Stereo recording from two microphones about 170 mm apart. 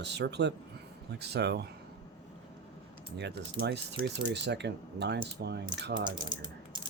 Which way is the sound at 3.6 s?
75° right (ahead or behind).